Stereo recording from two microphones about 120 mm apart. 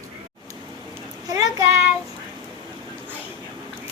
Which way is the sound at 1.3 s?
30° right (ahead or behind).